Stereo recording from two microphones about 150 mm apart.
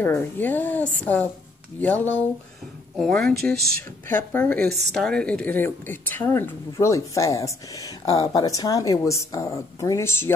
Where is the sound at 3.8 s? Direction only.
15° left (ahead or behind).